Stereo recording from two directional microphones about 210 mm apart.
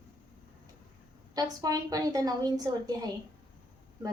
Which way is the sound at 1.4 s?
15° right (ahead or behind).